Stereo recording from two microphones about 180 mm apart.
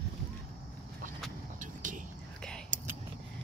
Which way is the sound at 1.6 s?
45° right (ahead or behind).